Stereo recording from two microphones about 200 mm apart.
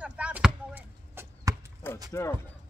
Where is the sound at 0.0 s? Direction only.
5° right (ahead or behind).